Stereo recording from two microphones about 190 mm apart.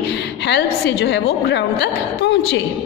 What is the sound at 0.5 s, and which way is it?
A woman's voice, 65° left (ahead or behind).